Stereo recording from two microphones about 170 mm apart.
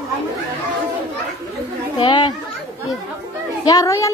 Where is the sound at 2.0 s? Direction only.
30° left (ahead or behind).